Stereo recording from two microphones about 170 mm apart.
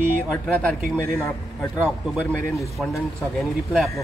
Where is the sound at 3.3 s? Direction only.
Centre (ahead or behind).